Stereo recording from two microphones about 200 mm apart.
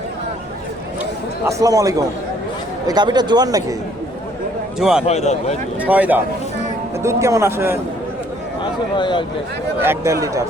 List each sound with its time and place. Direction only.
1.5 s a man's voice: 15° right (ahead or behind)
4.8 s a man's voice: centre (ahead or behind)
5.0 s speech: 35° left (ahead or behind)
5.8 s a man's voice: 10° right (ahead or behind)
9.0 s speech: 25° left (ahead or behind)
9.8 s a man's voice: 10° right (ahead or behind)